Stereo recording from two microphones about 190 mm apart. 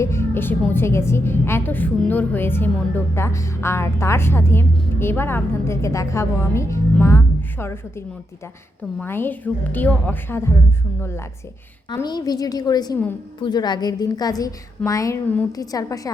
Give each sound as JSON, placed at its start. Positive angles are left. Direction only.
{"t": 0.0, "sound": "a woman's voice", "side_deg": 15}
{"t": 11.9, "sound": "a woman's voice", "side_deg": 20}